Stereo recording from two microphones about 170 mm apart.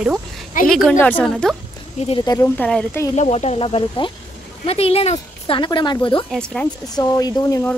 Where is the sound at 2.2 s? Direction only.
20° left (ahead or behind).